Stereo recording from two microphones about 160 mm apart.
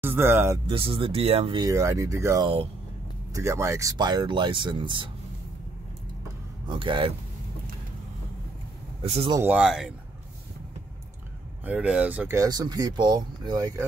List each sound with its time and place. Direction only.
0.0 s speech: 15° right (ahead or behind)
0.7 s speech: 35° right (ahead or behind)
1.6 s speech: 20° right (ahead or behind)
2.4 s speech: 35° right (ahead or behind)
3.3 s speech: 20° right (ahead or behind)
6.7 s speech: 30° right (ahead or behind)
9.0 s speech: 40° right (ahead or behind)
9.4 s speech: 5° right (ahead or behind)
11.6 s speech: 10° right (ahead or behind)